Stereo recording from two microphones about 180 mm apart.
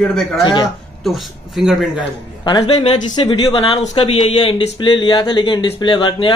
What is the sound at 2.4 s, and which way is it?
Speech, 30° left (ahead or behind).